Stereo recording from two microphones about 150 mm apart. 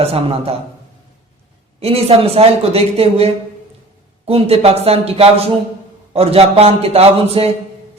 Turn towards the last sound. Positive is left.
turn(degrees=-40)  # may be behind; listen again after turning